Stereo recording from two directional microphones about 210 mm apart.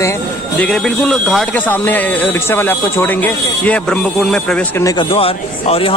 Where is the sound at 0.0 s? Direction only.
10° left (ahead or behind).